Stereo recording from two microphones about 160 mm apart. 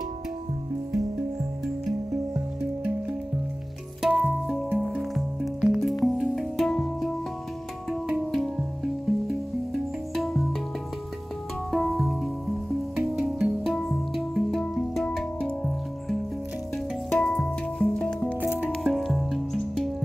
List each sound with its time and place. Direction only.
4.0 s music: 5° right (ahead or behind)
8.1 s music: centre (ahead or behind)
10.1 s music: centre (ahead or behind)
11.7 s music: centre (ahead or behind)
18.4 s music: 10° right (ahead or behind)